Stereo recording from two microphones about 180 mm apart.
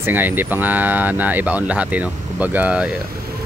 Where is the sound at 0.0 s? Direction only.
10° right (ahead or behind).